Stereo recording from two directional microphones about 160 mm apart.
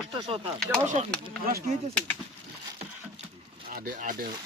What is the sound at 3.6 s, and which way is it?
Speech, 65° right (ahead or behind).